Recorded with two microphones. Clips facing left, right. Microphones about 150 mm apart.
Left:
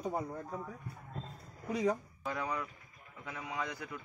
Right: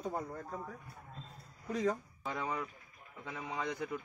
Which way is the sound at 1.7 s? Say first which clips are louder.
Left 1 dB; 10° left (ahead or behind).